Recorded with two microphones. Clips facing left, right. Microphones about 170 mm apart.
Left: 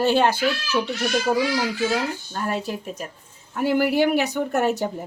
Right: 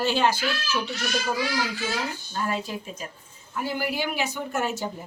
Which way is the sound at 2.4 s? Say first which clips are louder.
Left 3 dB; 65° left (ahead or behind).